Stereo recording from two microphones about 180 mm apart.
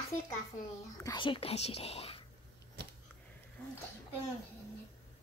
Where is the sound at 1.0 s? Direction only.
25° left (ahead or behind).